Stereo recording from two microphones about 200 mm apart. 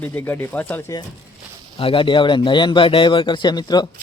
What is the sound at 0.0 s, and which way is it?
Speech, 10° left (ahead or behind).